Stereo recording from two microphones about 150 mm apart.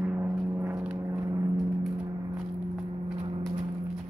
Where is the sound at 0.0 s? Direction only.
15° right (ahead or behind).